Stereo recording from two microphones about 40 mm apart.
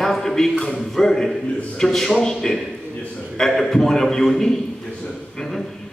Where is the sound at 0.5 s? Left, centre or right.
Left.